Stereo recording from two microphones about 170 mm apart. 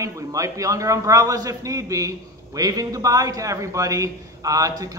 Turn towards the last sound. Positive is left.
turn(degrees=-20)  # may be behind; listen again after turning